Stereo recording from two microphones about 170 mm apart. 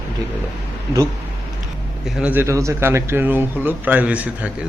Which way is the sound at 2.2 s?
15° right (ahead or behind).